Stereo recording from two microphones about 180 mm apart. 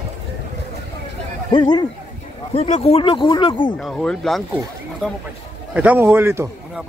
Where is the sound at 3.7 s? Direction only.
Centre (ahead or behind).